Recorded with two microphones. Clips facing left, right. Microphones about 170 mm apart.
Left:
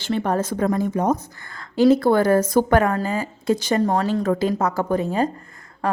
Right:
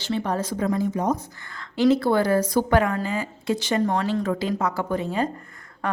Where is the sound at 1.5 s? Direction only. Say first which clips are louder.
Left 4 dB; 35° left (ahead or behind).